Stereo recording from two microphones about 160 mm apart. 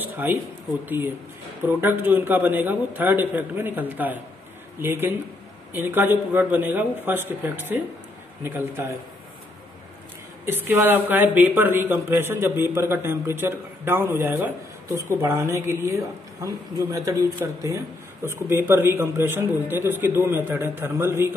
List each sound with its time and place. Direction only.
0.0 s speech: 10° right (ahead or behind)
10.4 s speech: 15° right (ahead or behind)